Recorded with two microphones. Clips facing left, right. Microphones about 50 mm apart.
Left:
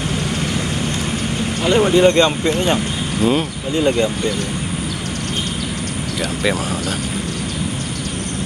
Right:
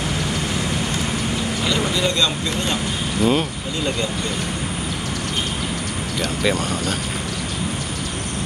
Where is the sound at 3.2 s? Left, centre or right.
Centre.